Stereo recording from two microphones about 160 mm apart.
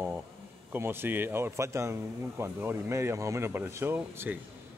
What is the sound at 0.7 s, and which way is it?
Speech, 15° right (ahead or behind).